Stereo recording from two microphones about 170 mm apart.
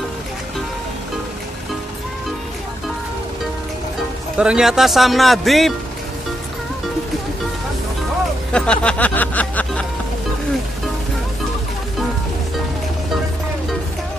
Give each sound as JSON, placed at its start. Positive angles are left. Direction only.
{"t": 4.4, "sound": "speech", "side_deg": -5}
{"t": 8.5, "sound": "speech", "side_deg": 5}